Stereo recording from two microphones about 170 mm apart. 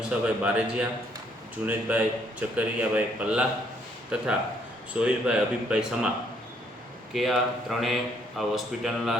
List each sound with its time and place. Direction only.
0.0 s speech: 5° right (ahead or behind)
7.1 s speech: centre (ahead or behind)